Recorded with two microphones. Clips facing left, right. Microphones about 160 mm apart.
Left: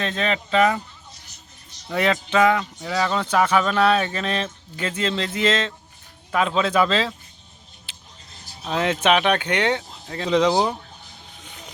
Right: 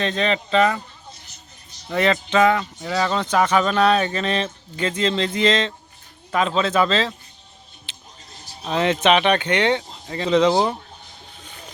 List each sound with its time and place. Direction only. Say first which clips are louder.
0.0 s speech: right 3 dB; 5° left (ahead or behind)
1.9 s speech: right 2 dB; 5° left (ahead or behind)
7.9 s vehicle: left 1 dB; 10° left (ahead or behind)
8.6 s speech: right 2 dB; 5° left (ahead or behind)
11.3 s a sound: right 1 dB; centre (ahead or behind)